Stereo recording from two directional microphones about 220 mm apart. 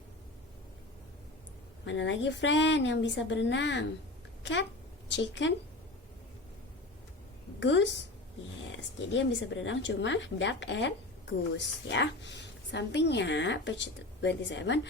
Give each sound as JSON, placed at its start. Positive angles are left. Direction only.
{"t": 1.8, "sound": "speech", "side_deg": 55}
{"t": 5.0, "sound": "a woman's voice", "side_deg": 55}
{"t": 7.6, "sound": "a woman's voice", "side_deg": 55}